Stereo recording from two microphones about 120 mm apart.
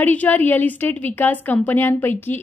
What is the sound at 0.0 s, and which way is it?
A woman's voice, 15° left (ahead or behind).